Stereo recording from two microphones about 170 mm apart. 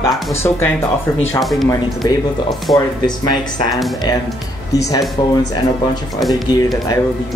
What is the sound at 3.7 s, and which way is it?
Speech, centre (ahead or behind).